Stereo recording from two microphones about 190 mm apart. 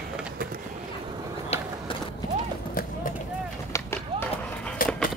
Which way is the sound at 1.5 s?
35° left (ahead or behind).